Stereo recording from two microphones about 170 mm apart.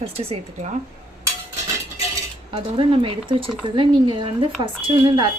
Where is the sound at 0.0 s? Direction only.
35° right (ahead or behind).